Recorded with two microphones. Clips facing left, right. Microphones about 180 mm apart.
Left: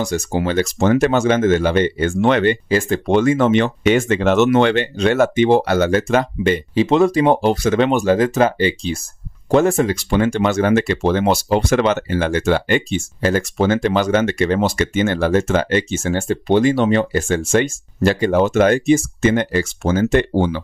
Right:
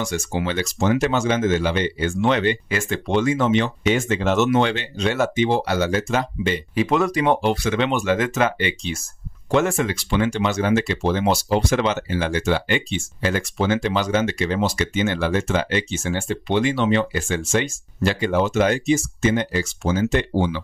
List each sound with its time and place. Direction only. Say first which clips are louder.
0.0 s speech: left 5 dB; 40° left (ahead or behind); by 6.6 s 55° left (ahead or behind)
6.7 s speech: left 6 dB; 30° left (ahead or behind); by 20.6 s 55° left (ahead or behind)